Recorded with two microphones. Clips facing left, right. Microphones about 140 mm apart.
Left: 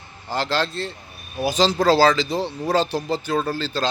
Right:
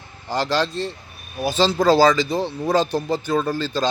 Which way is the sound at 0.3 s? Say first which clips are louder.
Right 2 dB; centre (ahead or behind).